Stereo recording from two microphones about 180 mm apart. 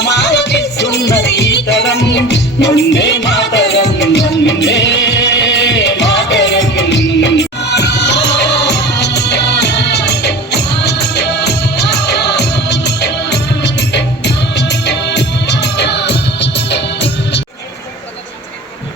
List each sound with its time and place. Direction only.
0.0 s music: 70° left (ahead or behind)